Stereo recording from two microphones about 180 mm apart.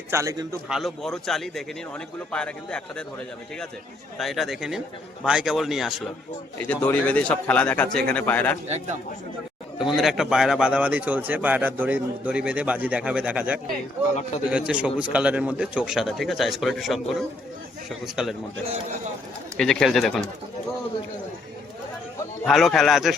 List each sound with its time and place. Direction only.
0.1 s a man's voice: 15° right (ahead or behind)
0.7 s a man's voice: centre (ahead or behind)
4.2 s a man's voice: centre (ahead or behind)
6.6 s speech: 10° left (ahead or behind)
9.7 s a man's voice: centre (ahead or behind)
19.5 s a man's voice: centre (ahead or behind)
22.4 s a man's voice: centre (ahead or behind)